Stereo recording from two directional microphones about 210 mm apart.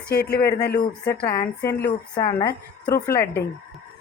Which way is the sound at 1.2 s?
15° left (ahead or behind).